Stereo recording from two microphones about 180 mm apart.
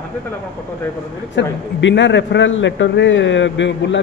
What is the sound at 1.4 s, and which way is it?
A man's voice, 85° left.